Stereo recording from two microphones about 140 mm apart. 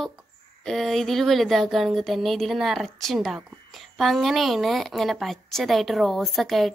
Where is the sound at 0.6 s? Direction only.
Centre (ahead or behind).